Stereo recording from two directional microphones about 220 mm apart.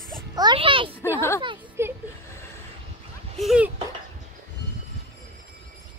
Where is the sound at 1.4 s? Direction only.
10° right (ahead or behind).